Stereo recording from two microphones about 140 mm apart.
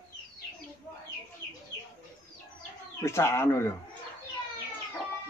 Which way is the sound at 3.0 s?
20° left (ahead or behind).